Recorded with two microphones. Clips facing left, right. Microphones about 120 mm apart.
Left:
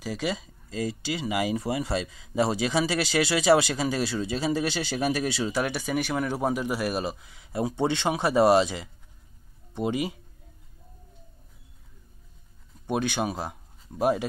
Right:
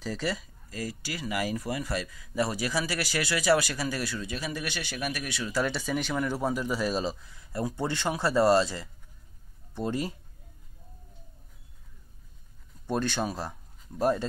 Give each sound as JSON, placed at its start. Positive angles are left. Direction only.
{"t": 0.0, "sound": "speech", "side_deg": 15}
{"t": 5.6, "sound": "a man's voice", "side_deg": 10}
{"t": 12.8, "sound": "speech", "side_deg": 15}